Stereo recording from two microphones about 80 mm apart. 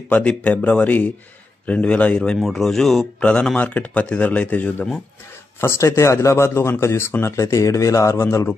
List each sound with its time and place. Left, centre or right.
0.1 s speech: centre
3.2 s speech: centre
5.6 s speech: left